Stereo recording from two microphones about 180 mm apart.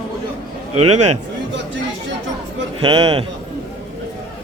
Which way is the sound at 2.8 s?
30° right (ahead or behind).